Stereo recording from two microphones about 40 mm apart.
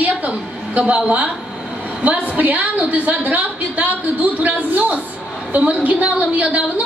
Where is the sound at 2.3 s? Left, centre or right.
Right.